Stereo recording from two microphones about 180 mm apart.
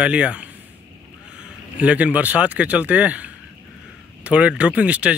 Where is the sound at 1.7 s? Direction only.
10° right (ahead or behind).